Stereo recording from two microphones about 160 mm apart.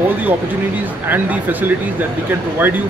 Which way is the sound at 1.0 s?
10° right (ahead or behind).